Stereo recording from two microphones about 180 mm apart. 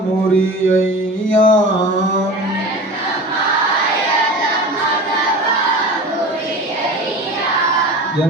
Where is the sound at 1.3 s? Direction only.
45° left (ahead or behind).